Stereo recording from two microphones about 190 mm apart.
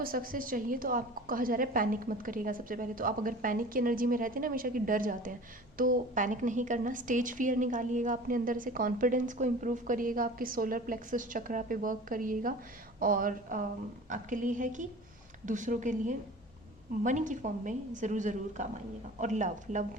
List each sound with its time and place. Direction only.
0.0 s a woman's voice: 50° right (ahead or behind)